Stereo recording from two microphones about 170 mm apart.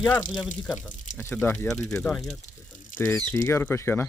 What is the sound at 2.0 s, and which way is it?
Speech, 10° left (ahead or behind).